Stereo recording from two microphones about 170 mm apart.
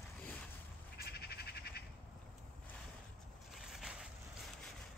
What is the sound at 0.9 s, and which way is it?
Bird, 70° left (ahead or behind).